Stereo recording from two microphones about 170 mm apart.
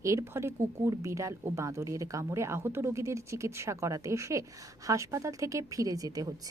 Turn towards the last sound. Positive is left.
turn(degrees=-20)  # may be behind; listen again after turning